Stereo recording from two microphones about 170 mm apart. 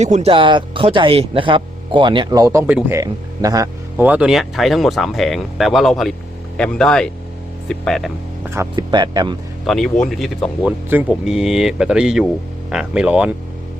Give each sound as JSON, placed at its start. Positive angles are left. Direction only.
{"t": 0.0, "sound": "speech", "side_deg": -40}
{"t": 3.9, "sound": "speech", "side_deg": -10}
{"t": 8.7, "sound": "speech", "side_deg": -25}
{"t": 9.6, "sound": "speech", "side_deg": 0}